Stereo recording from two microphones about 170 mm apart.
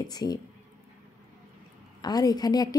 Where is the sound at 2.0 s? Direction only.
25° left (ahead or behind).